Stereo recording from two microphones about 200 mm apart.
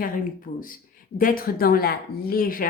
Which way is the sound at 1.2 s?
45° left (ahead or behind).